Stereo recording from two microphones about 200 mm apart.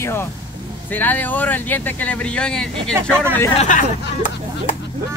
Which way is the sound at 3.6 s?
40° left (ahead or behind).